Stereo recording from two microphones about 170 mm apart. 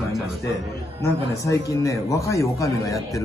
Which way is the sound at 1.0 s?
20° left (ahead or behind).